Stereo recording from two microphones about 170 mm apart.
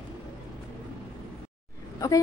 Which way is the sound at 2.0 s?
20° left (ahead or behind).